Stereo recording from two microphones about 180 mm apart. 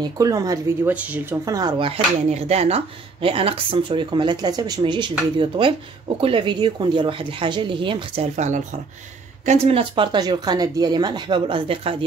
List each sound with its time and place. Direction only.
0.0 s speech: 20° right (ahead or behind)
8.4 s speech: 40° right (ahead or behind)